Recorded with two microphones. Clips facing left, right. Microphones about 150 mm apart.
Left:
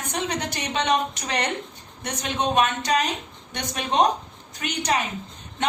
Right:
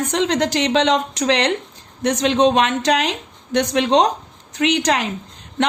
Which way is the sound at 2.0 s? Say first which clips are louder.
Right 11 dB; 90° right.